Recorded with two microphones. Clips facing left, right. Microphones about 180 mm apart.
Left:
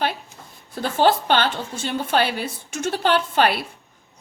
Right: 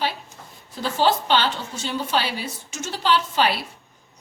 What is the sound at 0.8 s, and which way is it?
A woman's voice, 55° left (ahead or behind).